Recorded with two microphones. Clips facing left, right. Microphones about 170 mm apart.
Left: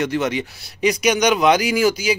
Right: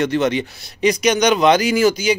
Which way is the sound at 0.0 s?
10° left (ahead or behind).